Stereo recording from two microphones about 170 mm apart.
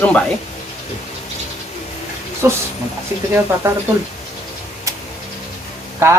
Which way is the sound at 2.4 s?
15° right (ahead or behind).